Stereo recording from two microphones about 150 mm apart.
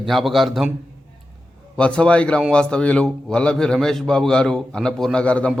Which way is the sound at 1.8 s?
5° left (ahead or behind).